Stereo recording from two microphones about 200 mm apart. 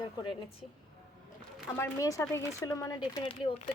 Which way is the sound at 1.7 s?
15° left (ahead or behind).